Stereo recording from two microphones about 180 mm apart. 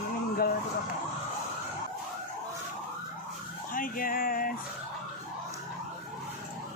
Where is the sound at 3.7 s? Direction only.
50° left (ahead or behind).